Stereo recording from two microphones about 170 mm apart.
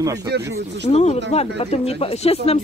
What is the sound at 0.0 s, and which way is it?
Speech, 20° right (ahead or behind).